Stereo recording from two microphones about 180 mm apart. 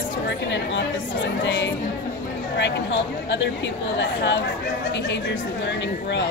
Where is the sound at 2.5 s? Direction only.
75° left (ahead or behind).